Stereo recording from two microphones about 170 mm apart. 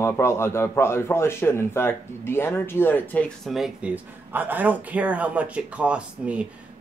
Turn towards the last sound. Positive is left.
turn(degrees=-5)  # may be behind; listen again after turning